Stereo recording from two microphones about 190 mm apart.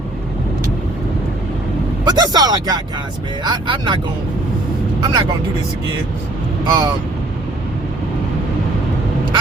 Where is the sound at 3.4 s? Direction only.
25° right (ahead or behind).